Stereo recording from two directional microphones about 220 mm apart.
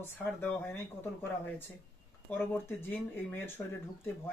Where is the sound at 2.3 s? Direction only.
10° left (ahead or behind).